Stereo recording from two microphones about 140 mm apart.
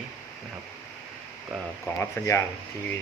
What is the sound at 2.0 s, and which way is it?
Speech, 20° left (ahead or behind).